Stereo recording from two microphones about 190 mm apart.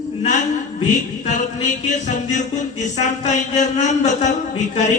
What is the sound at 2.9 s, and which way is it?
A man's voice, 40° left (ahead or behind).